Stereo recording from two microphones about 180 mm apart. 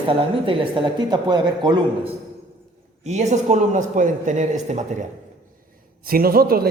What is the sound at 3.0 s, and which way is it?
A man's voice, 40° right (ahead or behind).